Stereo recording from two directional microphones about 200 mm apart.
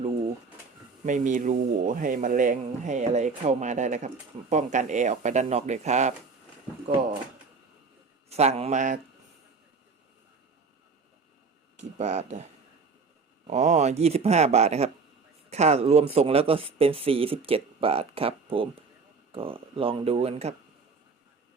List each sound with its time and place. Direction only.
1.0 s speech: 40° right (ahead or behind)
8.3 s speech: 30° right (ahead or behind)
11.9 s speech: 35° right (ahead or behind)
13.5 s speech: 35° right (ahead or behind)